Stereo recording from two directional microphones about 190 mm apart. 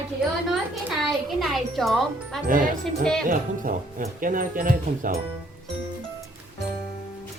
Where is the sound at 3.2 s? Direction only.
45° right (ahead or behind).